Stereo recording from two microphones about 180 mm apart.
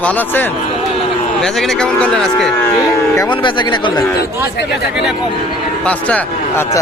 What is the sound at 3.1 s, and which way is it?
Speech, 25° left (ahead or behind).